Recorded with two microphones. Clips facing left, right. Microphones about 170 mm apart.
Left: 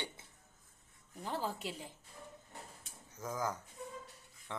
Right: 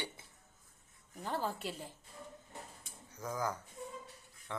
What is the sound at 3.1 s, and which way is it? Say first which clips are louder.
Speech: right 1 dB; 5° left (ahead or behind).